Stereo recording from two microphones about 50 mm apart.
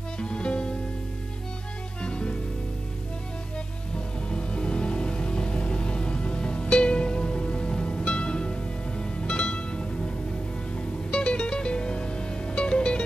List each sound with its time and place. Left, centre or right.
0.2 s music: centre
2.0 s music: centre
4.3 s music: centre